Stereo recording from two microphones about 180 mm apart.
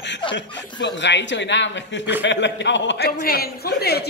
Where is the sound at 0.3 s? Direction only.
80° left.